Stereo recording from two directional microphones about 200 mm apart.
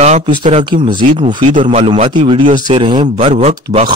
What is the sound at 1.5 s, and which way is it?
Speech, 35° right (ahead or behind).